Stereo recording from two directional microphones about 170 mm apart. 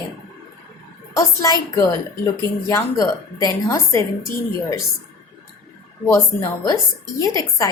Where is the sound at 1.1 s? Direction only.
20° left (ahead or behind).